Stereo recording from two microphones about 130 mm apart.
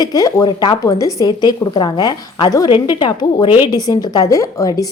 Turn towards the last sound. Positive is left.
turn(degrees=25)  # may be behind; listen again after turning